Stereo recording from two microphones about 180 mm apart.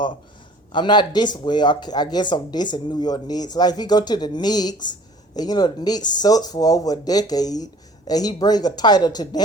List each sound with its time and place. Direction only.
0.7 s speech: 25° left (ahead or behind)